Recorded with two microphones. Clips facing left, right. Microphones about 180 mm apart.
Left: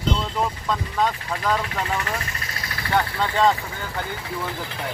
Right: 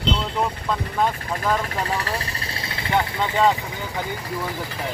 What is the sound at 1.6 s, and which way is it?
Speech, 35° right (ahead or behind).